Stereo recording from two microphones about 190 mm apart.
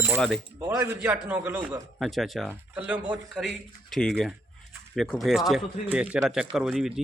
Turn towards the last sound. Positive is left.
turn(degrees=0)  # may be behind; listen again after turning